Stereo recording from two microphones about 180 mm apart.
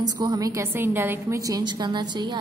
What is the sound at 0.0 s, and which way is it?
A woman's voice, 20° right (ahead or behind).